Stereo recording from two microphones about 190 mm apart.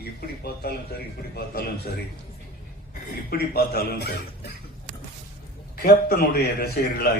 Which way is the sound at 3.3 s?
55° left (ahead or behind).